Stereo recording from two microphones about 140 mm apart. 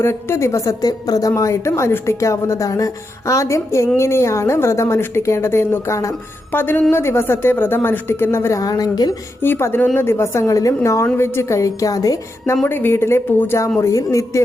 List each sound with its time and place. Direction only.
0.0 s a woman's voice: 15° left (ahead or behind)
9.4 s a woman's voice: 15° left (ahead or behind)